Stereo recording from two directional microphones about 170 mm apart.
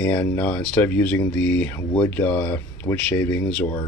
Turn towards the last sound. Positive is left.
turn(degrees=10)  # may be behind; listen again after turning